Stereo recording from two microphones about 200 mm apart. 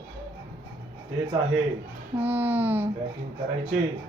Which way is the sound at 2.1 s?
10° right (ahead or behind).